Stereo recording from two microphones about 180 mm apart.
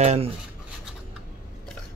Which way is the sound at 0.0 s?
35° right (ahead or behind).